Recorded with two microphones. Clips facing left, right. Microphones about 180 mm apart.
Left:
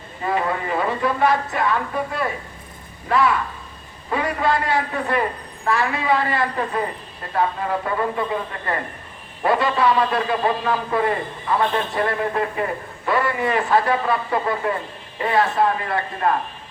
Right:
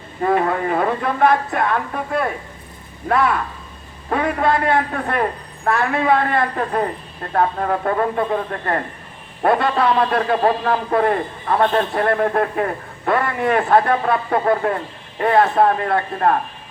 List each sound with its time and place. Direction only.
0.2 s a woman's voice: 55° right (ahead or behind)